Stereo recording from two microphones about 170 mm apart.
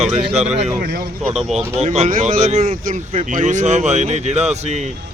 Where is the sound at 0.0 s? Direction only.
35° right (ahead or behind).